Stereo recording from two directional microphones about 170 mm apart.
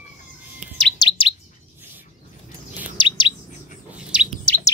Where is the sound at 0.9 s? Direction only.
30° left (ahead or behind).